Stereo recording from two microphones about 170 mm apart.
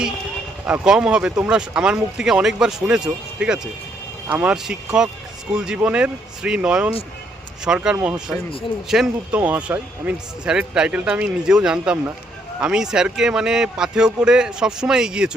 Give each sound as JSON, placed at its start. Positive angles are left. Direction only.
{"t": 0.6, "sound": "speech", "side_deg": -5}